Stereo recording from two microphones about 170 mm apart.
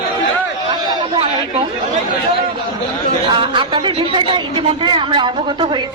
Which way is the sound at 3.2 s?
25° right (ahead or behind).